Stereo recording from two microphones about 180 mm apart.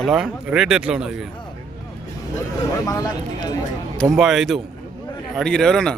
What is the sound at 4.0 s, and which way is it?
A man's voice, centre (ahead or behind).